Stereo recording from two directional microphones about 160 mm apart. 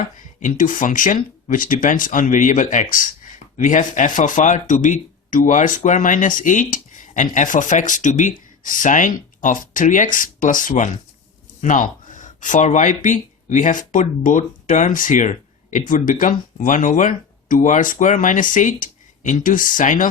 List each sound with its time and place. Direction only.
0.3 s speech: 55° left (ahead or behind)